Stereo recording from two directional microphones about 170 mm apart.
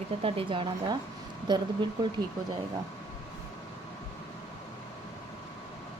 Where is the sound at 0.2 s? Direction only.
30° right (ahead or behind).